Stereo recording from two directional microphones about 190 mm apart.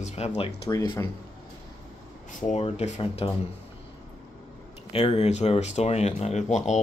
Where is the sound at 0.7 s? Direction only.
20° left (ahead or behind).